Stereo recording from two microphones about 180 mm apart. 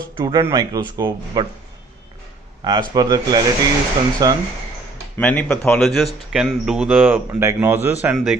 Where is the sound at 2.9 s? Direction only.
20° right (ahead or behind).